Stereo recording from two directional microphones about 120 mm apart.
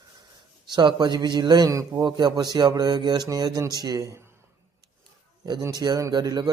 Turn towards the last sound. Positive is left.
turn(degrees=-35)  # may be behind; listen again after turning